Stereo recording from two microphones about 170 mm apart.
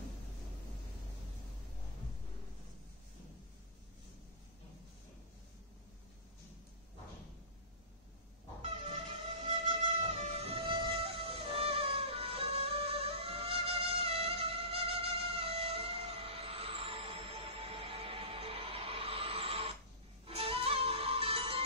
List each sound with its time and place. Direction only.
8.8 s music: 30° right (ahead or behind)